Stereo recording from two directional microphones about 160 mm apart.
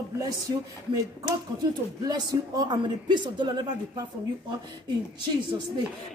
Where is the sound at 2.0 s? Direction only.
25° right (ahead or behind).